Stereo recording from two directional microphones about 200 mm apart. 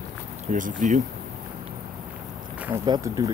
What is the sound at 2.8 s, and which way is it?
Speech, 20° right (ahead or behind).